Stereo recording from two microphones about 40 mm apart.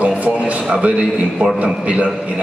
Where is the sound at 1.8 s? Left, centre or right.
Right.